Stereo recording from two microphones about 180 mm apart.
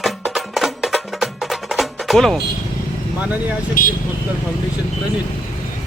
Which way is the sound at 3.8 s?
50° left (ahead or behind).